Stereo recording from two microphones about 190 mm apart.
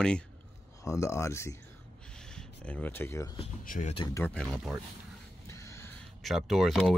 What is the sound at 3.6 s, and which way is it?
Speech, 45° left (ahead or behind).